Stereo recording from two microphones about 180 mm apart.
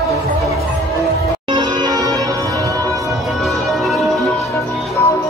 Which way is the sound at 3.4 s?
Centre (ahead or behind).